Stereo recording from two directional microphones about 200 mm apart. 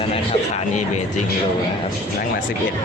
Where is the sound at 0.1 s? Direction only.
35° left (ahead or behind).